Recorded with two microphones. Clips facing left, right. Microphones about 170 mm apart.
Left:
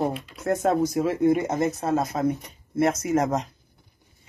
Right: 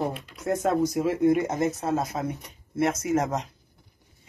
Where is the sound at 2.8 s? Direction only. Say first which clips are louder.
Left 2 dB; 5° right (ahead or behind).